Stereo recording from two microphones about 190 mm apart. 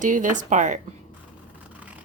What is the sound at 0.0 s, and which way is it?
Speech, 40° right (ahead or behind).